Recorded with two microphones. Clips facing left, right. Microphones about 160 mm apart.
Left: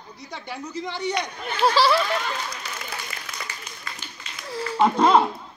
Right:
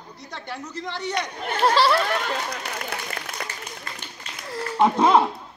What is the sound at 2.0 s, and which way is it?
Speech, 60° right (ahead or behind).